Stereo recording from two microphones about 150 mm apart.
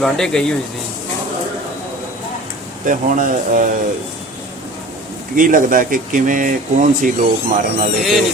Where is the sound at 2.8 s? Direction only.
65° right (ahead or behind).